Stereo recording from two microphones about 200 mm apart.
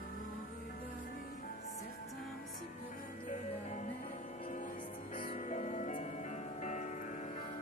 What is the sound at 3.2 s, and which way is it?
Music, 35° left (ahead or behind).